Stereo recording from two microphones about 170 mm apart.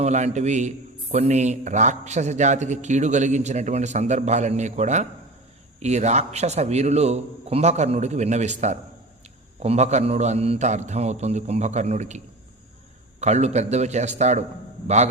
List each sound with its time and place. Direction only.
0.0 s a man's voice: 45° right (ahead or behind)